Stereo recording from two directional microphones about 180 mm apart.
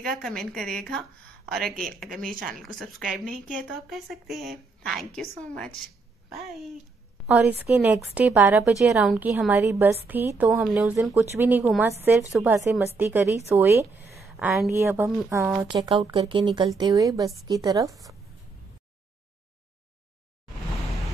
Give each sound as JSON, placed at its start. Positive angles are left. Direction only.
{"t": 0.1, "sound": "a woman's voice", "side_deg": 0}
{"t": 6.3, "sound": "a woman's voice", "side_deg": 0}
{"t": 14.1, "sound": "a sound", "side_deg": 0}
{"t": 14.7, "sound": "a woman's voice", "side_deg": -15}
{"t": 15.0, "sound": "a woman's voice", "side_deg": 0}
{"t": 15.3, "sound": "speech", "side_deg": -15}